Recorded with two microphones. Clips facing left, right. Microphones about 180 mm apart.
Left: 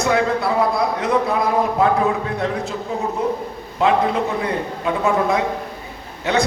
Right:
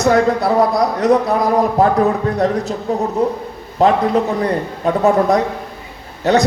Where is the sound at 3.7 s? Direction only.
40° right (ahead or behind).